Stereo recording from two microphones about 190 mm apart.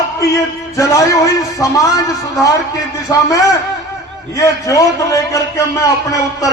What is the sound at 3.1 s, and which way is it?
A man's voice, 20° left (ahead or behind).